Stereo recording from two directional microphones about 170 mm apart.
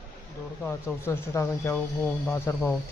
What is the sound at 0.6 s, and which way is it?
Speech, 10° left (ahead or behind).